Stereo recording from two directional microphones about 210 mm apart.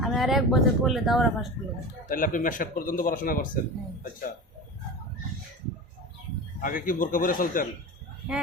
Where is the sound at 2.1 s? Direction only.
40° left (ahead or behind).